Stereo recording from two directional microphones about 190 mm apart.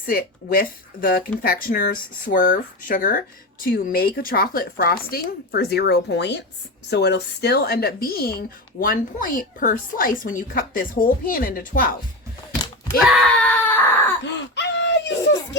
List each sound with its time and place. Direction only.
0.1 s a woman's voice: 50° left (ahead or behind)
13.1 s baby cry: centre (ahead or behind)
14.3 s laughter: 65° left (ahead or behind)